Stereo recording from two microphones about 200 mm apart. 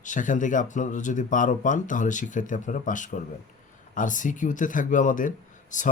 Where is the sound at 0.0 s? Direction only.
40° left (ahead or behind).